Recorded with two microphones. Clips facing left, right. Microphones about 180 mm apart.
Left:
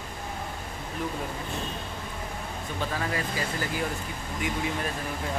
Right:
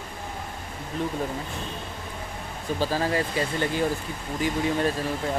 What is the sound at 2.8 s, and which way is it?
Speech, 30° right (ahead or behind).